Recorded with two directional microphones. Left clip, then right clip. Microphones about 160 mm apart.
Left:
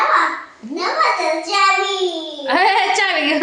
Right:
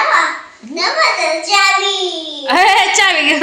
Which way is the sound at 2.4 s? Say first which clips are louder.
Right 4 dB; 20° right (ahead or behind).